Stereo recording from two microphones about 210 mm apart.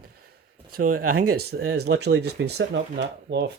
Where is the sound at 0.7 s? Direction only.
45° right (ahead or behind).